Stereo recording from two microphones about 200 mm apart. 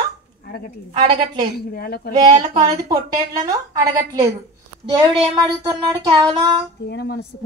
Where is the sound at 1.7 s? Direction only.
50° left (ahead or behind).